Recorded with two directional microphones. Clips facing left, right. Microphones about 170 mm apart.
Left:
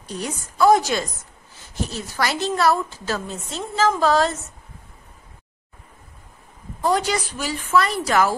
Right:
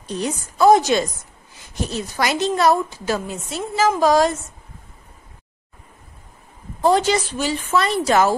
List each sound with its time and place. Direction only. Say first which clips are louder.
0.0 s a woman's voice: right 5 dB; 20° right (ahead or behind)
6.8 s a woman's voice: right 4 dB; 25° right (ahead or behind)